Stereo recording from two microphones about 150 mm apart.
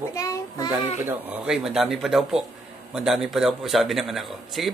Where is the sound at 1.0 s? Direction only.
10° right (ahead or behind).